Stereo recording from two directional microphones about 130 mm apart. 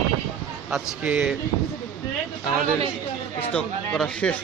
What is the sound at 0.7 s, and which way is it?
Speech, 10° right (ahead or behind).